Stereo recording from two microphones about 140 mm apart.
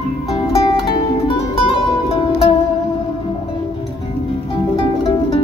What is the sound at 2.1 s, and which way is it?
Music, 40° left (ahead or behind).